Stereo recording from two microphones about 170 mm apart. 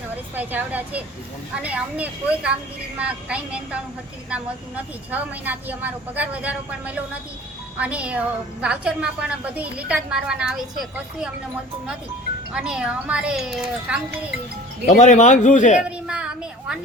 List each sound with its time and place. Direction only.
0.3 s a woman's voice: 10° right (ahead or behind)
12.5 s speech: 5° right (ahead or behind)
14.8 s a man's voice: 45° left (ahead or behind)
15.8 s a sound: 5° right (ahead or behind)